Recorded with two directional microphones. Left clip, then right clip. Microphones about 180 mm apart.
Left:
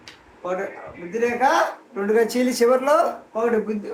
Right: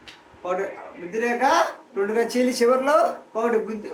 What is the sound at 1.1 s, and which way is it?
Speech, 15° left (ahead or behind).